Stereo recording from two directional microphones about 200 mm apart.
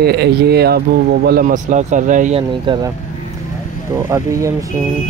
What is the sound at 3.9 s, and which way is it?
Speech, 15° right (ahead or behind).